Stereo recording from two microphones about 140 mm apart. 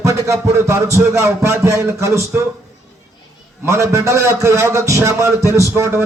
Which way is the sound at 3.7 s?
20° right (ahead or behind).